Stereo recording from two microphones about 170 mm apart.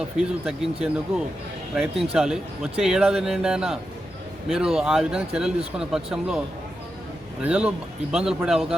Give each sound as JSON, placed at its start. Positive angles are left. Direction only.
{"t": 0.2, "sound": "a man's voice", "side_deg": -5}
{"t": 7.4, "sound": "a man's voice", "side_deg": -5}